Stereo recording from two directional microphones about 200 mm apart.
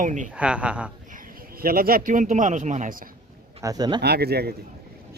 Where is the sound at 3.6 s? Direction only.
20° right (ahead or behind).